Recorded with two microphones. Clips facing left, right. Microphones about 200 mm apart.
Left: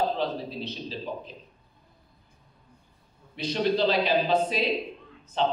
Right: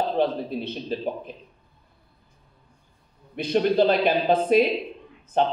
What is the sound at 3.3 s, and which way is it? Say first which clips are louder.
A man's voice: right 5 dB; 55° right (ahead or behind).